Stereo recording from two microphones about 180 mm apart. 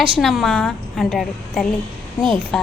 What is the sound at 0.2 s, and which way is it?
A woman's voice, centre (ahead or behind).